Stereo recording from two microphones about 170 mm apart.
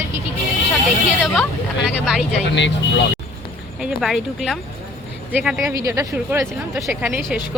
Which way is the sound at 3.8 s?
Centre (ahead or behind).